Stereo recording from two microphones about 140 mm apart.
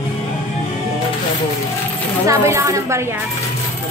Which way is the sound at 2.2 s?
20° right (ahead or behind).